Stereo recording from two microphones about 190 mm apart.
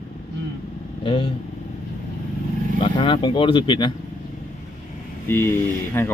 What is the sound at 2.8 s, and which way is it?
Speech, 25° left (ahead or behind).